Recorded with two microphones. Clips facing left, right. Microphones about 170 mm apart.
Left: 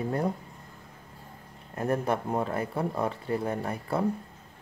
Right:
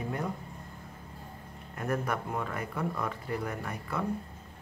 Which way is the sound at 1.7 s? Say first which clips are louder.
Left 5 dB; 30° left (ahead or behind).